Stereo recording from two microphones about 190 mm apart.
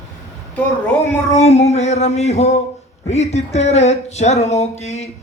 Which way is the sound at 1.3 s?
35° left (ahead or behind).